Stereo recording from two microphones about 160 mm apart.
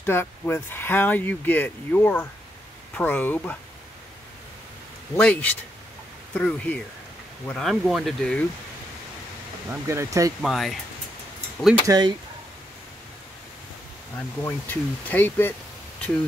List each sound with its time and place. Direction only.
0.0 s speech: 15° left (ahead or behind)
5.1 s speech: 10° left (ahead or behind)
9.7 s speech: 15° right (ahead or behind)
10.4 s speech: centre (ahead or behind)
11.8 s speech: 25° right (ahead or behind)
14.4 s speech: 10° left (ahead or behind)